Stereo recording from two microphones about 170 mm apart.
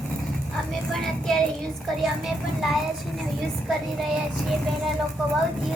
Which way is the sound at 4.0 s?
Centre (ahead or behind).